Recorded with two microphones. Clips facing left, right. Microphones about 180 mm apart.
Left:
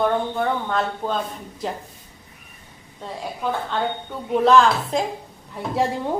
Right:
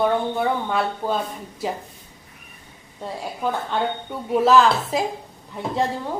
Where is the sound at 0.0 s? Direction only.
5° right (ahead or behind).